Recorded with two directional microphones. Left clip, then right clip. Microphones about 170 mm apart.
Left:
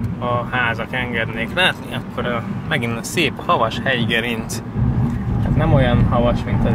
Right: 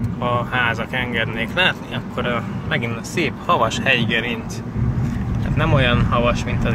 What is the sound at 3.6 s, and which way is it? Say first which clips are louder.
Speech: right 1 dB; 20° left (ahead or behind).